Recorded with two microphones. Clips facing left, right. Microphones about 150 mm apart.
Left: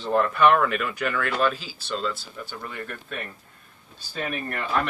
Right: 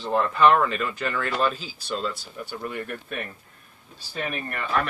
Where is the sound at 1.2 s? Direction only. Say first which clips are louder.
Even; centre (ahead or behind).